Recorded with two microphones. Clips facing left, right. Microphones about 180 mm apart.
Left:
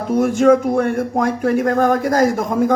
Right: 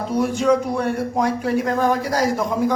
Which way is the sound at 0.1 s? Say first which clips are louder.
Left 6 dB; 50° left (ahead or behind).